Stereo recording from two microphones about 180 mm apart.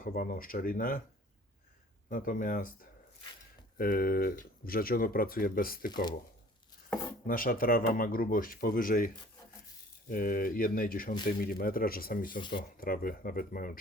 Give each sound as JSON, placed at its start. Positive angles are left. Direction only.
{"t": 0.0, "sound": "speech", "side_deg": 50}
{"t": 2.0, "sound": "speech", "side_deg": 50}
{"t": 3.8, "sound": "speech", "side_deg": 55}
{"t": 5.9, "sound": "speech", "side_deg": 25}
{"t": 7.3, "sound": "speech", "side_deg": 50}
{"t": 10.1, "sound": "speech", "side_deg": 50}